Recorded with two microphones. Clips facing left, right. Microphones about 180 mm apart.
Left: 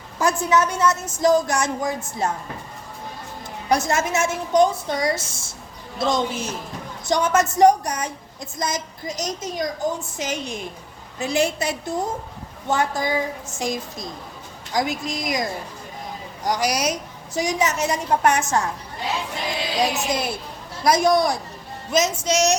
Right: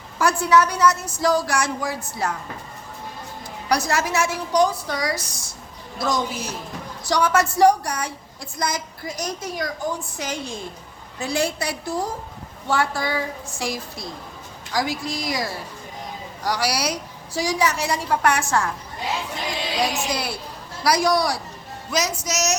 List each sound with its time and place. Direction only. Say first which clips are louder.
0.2 s a woman's voice: right 1 dB; 20° left (ahead or behind)
3.7 s a woman's voice: left 1 dB; 25° left (ahead or behind)
19.9 s a woman's voice: left 2 dB; 20° left (ahead or behind)